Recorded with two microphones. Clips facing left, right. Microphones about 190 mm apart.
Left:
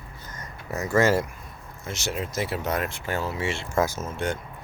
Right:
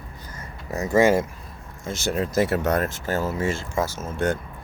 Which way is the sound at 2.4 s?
60° right (ahead or behind).